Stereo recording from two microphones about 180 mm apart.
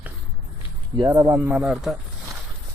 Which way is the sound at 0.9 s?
20° right (ahead or behind).